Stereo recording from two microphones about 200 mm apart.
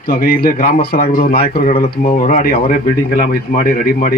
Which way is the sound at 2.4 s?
45° left (ahead or behind).